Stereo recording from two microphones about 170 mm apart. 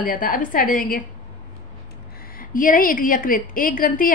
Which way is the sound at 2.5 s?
55° left (ahead or behind).